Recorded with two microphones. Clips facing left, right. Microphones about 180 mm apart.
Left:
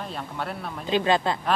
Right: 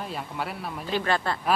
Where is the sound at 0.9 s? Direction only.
20° left (ahead or behind).